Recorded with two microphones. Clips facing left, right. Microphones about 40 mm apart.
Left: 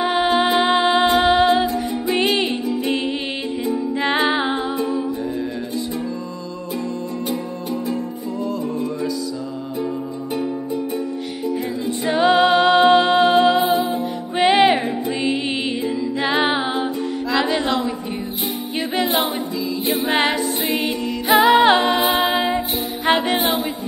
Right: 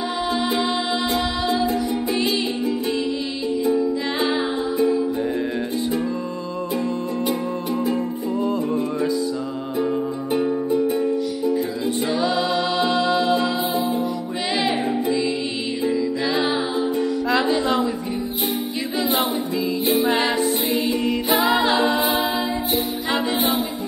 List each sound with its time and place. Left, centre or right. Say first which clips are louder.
0.0 s music: left 6 dB; left
3.7 s music: left 1 dB; left
12.2 s music: left 11 dB; left
20.1 s music: left 1 dB; left
21.4 s a capella: left 7 dB; left
23.0 s music: left 7 dB; left